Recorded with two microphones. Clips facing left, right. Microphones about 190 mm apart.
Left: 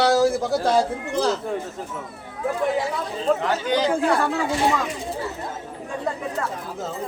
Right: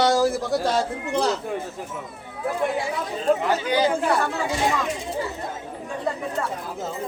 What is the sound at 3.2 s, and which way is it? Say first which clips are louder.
Speech: right 1 dB; 10° right (ahead or behind).